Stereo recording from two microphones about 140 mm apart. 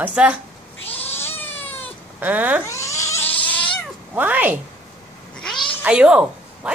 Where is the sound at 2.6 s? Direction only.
20° left (ahead or behind).